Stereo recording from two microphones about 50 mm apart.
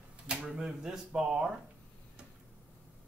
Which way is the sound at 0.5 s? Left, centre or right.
Centre.